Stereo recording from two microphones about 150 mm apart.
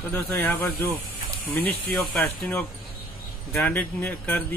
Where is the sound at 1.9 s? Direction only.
Centre (ahead or behind).